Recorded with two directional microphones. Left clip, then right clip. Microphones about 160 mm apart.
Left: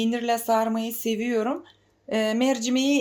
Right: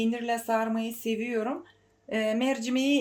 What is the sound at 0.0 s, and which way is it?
Speech, 30° left (ahead or behind).